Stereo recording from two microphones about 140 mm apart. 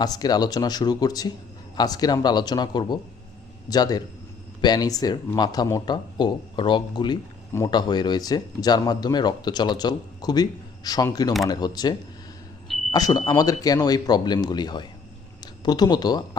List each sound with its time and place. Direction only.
0.0 s speech: 30° left (ahead or behind)